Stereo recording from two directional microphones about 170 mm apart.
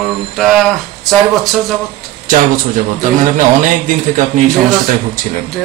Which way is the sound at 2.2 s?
50° right (ahead or behind).